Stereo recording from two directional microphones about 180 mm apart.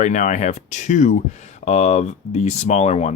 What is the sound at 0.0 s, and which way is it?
Speech, 40° left (ahead or behind).